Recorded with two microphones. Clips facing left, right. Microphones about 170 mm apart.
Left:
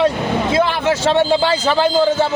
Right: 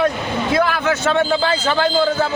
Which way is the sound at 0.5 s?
25° left (ahead or behind).